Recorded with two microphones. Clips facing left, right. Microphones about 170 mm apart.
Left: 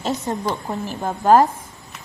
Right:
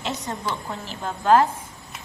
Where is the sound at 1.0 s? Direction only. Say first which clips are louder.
Left 3 dB; 40° left (ahead or behind).